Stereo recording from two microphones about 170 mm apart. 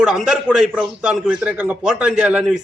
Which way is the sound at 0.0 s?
5° right (ahead or behind).